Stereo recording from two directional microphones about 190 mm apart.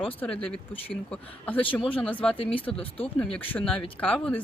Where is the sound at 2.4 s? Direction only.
30° left (ahead or behind).